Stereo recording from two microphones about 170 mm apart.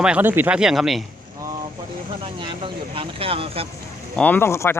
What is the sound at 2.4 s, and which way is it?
Speech, 30° right (ahead or behind).